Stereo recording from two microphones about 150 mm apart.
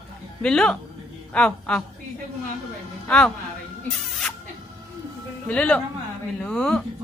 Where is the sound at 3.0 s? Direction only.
5° left (ahead or behind).